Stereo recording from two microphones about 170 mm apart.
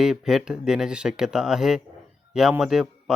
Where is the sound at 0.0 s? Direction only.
5° right (ahead or behind).